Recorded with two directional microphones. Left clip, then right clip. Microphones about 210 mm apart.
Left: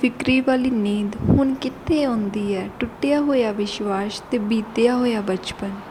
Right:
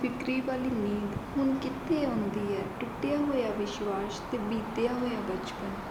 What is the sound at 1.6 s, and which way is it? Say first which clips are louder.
Speech: left 9 dB; 45° left (ahead or behind).